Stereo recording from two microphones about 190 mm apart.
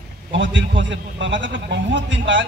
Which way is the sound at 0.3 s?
75° right (ahead or behind).